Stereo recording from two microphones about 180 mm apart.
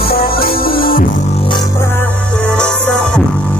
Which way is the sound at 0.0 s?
60° left (ahead or behind).